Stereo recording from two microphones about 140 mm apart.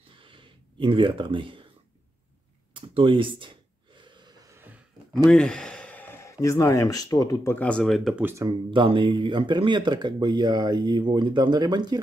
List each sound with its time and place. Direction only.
0.1 s a sound: 40° right (ahead or behind)
2.7 s gasp: 40° right (ahead or behind); by 4.8 s 15° right (ahead or behind)
5.3 s speech: 5° left (ahead or behind); by 7.5 s 25° left (ahead or behind)
7.5 s speech: 10° left (ahead or behind)
8.2 s speech: 15° right (ahead or behind)
8.5 s speech: 35° right (ahead or behind)